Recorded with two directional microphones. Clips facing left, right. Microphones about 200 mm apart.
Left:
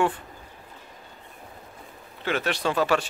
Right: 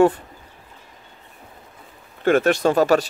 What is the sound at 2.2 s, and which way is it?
Speech, 50° right (ahead or behind).